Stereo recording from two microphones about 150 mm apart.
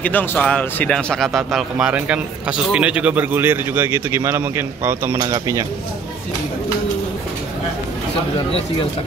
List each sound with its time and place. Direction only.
0.0 s a man's voice: 10° left (ahead or behind); by 5.7 s 20° right (ahead or behind)